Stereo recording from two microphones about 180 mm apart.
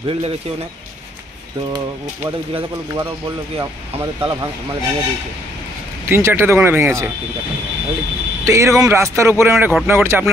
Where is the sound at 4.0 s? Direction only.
20° right (ahead or behind).